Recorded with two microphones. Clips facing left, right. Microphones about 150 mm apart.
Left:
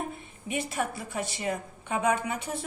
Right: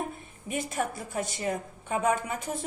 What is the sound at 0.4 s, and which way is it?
A woman's voice, 45° right (ahead or behind).